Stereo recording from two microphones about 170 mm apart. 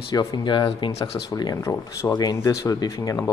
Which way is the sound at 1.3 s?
20° left (ahead or behind).